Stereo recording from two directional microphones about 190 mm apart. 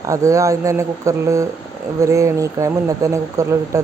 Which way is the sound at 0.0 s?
15° right (ahead or behind).